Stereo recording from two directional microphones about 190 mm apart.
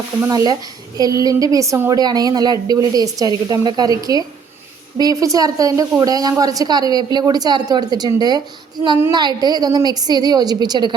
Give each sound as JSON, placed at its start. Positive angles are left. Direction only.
{"t": 0.2, "sound": "a woman's voice", "side_deg": -20}